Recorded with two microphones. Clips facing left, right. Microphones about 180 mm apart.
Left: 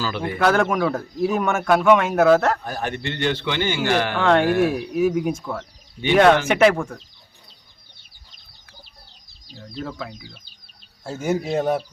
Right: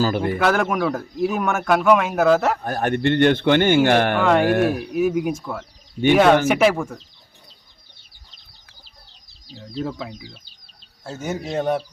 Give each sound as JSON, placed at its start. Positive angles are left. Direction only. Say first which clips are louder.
{"t": 0.0, "sound": "a man's voice", "louder": "right 6 dB", "side_deg": -45}
{"t": 0.3, "sound": "a man's voice", "louder": "even", "side_deg": 0}
{"t": 2.6, "sound": "a man's voice", "louder": "right 6 dB", "side_deg": -50}
{"t": 4.2, "sound": "a man's voice", "louder": "even", "side_deg": -5}
{"t": 4.4, "sound": "speech", "louder": "right 1 dB", "side_deg": -55}
{"t": 4.9, "sound": "a man's voice", "louder": "even", "side_deg": 0}
{"t": 9.6, "sound": "speech", "louder": "right 3 dB", "side_deg": -15}
{"t": 11.0, "sound": "speech", "louder": "left 4 dB", "side_deg": 10}